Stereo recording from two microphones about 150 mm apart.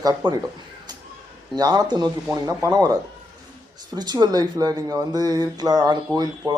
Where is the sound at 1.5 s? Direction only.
25° right (ahead or behind).